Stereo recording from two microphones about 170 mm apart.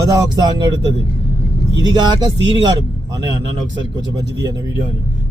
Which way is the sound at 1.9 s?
25° right (ahead or behind).